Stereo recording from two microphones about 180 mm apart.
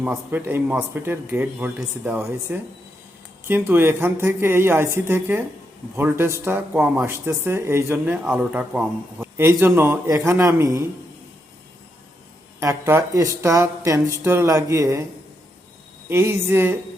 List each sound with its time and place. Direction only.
0.0 s speech: 10° right (ahead or behind)
12.5 s speech: 15° right (ahead or behind)
16.0 s speech: 10° right (ahead or behind)